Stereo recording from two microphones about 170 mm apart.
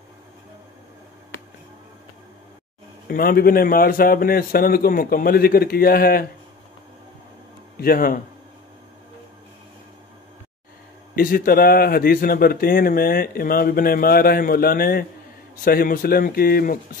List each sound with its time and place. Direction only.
3.1 s speech: 60° left (ahead or behind)
7.8 s speech: 60° left (ahead or behind)
11.1 s speech: 60° left (ahead or behind)